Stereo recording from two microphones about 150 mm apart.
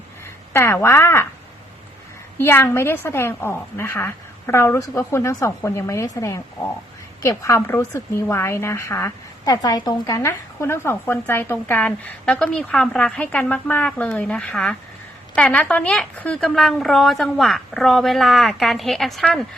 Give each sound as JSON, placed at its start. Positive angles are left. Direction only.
{"t": 0.5, "sound": "a woman's voice", "side_deg": 15}
{"t": 2.4, "sound": "a woman's voice", "side_deg": 15}